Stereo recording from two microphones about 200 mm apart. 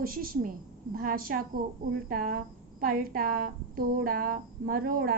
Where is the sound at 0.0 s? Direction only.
45° right (ahead or behind).